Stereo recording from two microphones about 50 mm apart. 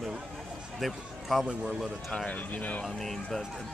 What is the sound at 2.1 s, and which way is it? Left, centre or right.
Speech, left.